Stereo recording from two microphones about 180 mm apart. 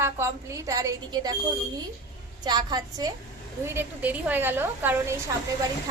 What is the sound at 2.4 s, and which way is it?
A woman's voice, 25° right (ahead or behind).